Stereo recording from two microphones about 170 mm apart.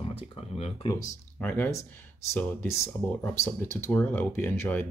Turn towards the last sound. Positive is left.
turn(degrees=10)  # may be behind; listen again after turning